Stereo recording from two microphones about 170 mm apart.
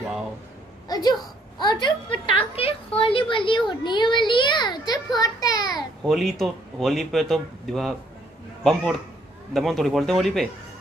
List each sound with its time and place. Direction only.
0.8 s a sound: 25° left (ahead or behind)
6.0 s speech: centre (ahead or behind)
9.5 s speech: centre (ahead or behind)